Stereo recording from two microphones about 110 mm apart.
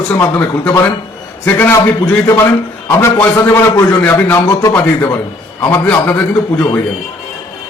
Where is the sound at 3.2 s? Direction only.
25° left (ahead or behind).